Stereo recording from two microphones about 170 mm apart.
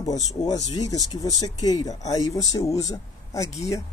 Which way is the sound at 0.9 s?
20° left (ahead or behind).